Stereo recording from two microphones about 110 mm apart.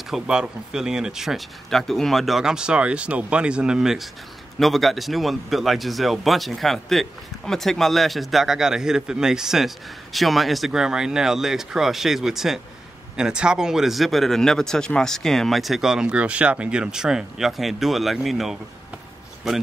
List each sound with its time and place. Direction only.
0.1 s a man's voice: 5° right (ahead or behind)